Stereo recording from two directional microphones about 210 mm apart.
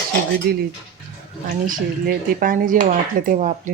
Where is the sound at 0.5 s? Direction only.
45° right (ahead or behind).